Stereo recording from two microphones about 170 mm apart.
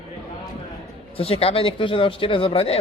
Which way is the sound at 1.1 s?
35° left (ahead or behind).